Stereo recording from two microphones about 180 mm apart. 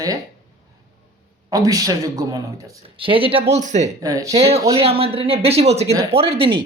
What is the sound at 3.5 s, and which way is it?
Speech, 40° right (ahead or behind).